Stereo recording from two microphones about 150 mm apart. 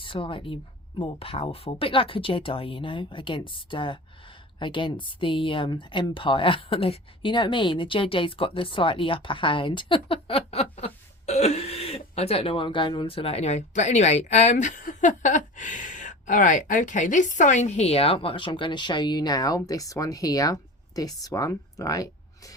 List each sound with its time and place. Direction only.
0.0 s a woman's voice: 35° left (ahead or behind)